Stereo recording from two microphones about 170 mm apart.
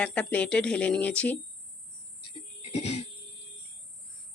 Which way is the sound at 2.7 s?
40° left (ahead or behind).